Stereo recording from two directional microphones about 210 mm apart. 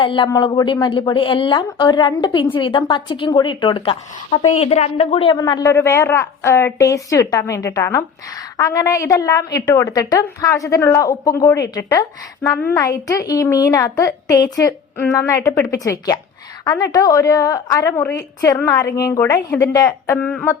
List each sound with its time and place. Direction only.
0.0 s a woman's voice: 25° left (ahead or behind)